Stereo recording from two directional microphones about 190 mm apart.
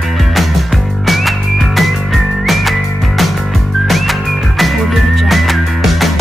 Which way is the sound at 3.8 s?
Centre (ahead or behind).